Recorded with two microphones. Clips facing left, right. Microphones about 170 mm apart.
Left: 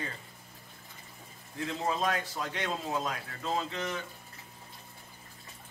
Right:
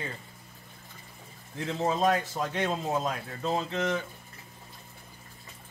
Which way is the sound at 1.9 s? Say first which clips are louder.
Right 6 dB; 25° right (ahead or behind).